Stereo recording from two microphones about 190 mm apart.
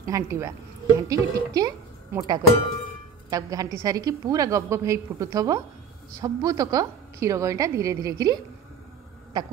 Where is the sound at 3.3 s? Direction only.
20° right (ahead or behind).